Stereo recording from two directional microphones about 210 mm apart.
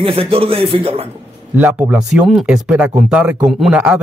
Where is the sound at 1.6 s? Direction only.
10° right (ahead or behind).